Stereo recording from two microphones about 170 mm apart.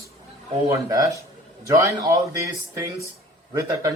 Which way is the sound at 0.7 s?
20° right (ahead or behind).